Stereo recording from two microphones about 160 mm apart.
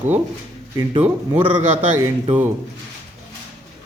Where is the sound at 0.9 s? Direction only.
45° right (ahead or behind).